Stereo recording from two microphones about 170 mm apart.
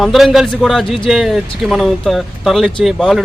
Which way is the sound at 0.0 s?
Centre (ahead or behind).